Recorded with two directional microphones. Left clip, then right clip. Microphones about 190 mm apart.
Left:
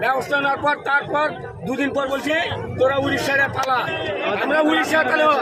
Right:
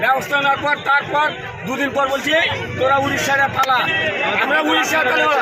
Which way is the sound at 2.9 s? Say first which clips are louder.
Right 3 dB; 20° left (ahead or behind).